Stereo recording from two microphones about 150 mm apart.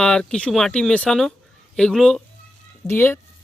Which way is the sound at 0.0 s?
5° left (ahead or behind).